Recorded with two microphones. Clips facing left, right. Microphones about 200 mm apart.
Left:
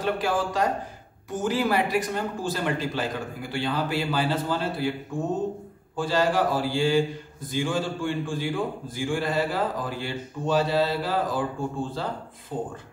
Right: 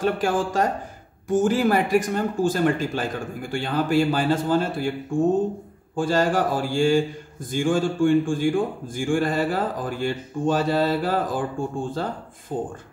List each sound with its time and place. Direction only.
0.0 s a man's voice: 50° right (ahead or behind)
5.9 s a man's voice: 50° right (ahead or behind)